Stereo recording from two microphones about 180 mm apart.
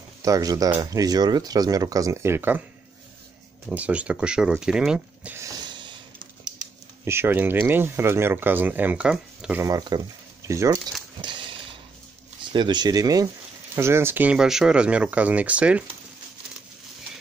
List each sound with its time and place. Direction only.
0.2 s speech: 20° right (ahead or behind)
3.6 s speech: 5° right (ahead or behind)
5.7 s a sound: 25° right (ahead or behind)
7.1 s speech: 15° right (ahead or behind)
12.5 s speech: 25° right (ahead or behind); by 15.8 s 5° right (ahead or behind)